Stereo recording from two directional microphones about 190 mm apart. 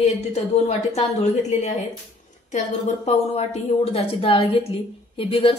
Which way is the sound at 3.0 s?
35° left (ahead or behind).